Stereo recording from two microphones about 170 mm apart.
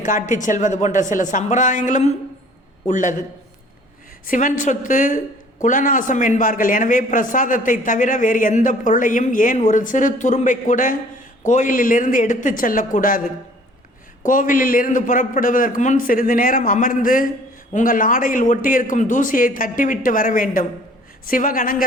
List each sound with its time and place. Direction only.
0.3 s speech: 50° left (ahead or behind)
4.3 s speech: 50° left (ahead or behind)
14.3 s speech: 50° left (ahead or behind)